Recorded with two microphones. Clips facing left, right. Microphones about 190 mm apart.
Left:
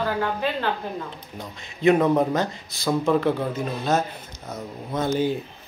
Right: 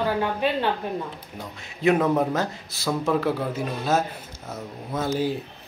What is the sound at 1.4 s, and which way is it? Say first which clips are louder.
Speech: left 2 dB; 5° right (ahead or behind).